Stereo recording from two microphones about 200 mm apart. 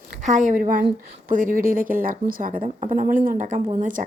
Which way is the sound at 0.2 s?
35° right (ahead or behind).